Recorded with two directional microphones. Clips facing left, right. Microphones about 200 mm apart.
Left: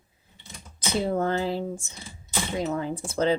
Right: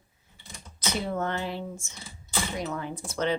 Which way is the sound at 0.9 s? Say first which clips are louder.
Left 6 dB; 30° left (ahead or behind).